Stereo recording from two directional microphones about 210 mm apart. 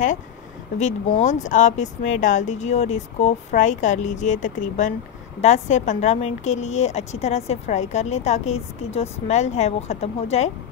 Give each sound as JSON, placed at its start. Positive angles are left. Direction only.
{"t": 0.7, "sound": "a woman's voice", "side_deg": 35}